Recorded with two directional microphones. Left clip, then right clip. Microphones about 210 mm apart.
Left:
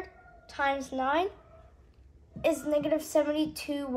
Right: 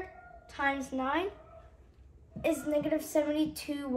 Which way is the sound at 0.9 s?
40° left (ahead or behind).